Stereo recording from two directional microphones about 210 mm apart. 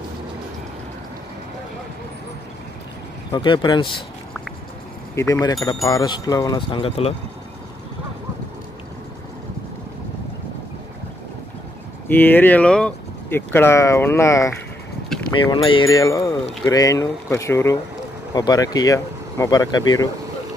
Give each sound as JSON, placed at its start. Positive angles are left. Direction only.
{"t": 3.3, "sound": "speech", "side_deg": 20}
{"t": 5.1, "sound": "speech", "side_deg": 15}
{"t": 12.1, "sound": "speech", "side_deg": 10}